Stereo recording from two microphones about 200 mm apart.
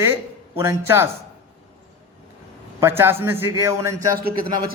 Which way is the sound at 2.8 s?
10° right (ahead or behind).